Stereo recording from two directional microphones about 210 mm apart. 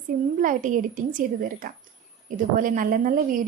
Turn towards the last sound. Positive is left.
turn(degrees=-40)  # may be behind; listen again after turning